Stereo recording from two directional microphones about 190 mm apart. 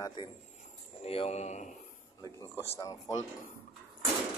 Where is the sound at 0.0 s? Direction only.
25° left (ahead or behind).